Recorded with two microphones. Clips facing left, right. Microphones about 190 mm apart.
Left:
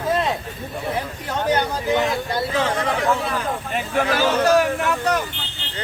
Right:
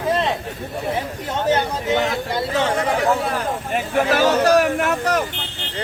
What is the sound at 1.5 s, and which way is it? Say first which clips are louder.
Speech: right 1 dB; 25° right (ahead or behind).